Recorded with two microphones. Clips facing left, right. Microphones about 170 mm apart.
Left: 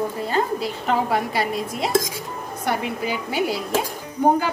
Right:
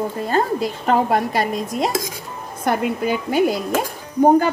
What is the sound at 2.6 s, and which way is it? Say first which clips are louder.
A woman's voice: right 5 dB; 50° right (ahead or behind).